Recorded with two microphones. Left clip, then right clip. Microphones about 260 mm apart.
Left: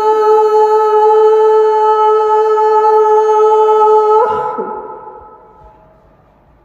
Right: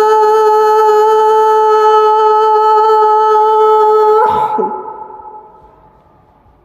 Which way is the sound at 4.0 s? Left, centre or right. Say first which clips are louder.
Right 1 dB; right.